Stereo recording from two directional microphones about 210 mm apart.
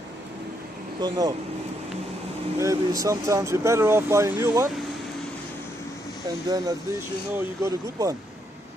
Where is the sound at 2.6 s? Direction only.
15° right (ahead or behind).